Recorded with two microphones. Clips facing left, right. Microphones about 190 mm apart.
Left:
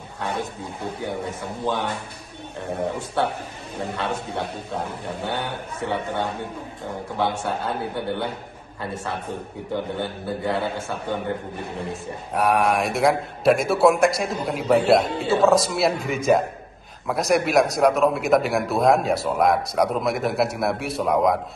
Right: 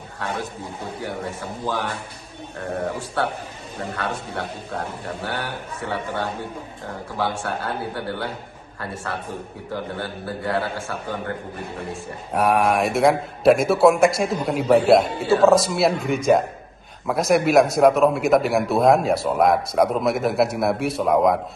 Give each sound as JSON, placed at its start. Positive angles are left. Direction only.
{"t": 1.0, "sound": "a man's voice", "side_deg": 20}
{"t": 3.9, "sound": "a man's voice", "side_deg": 20}
{"t": 12.3, "sound": "speech", "side_deg": 0}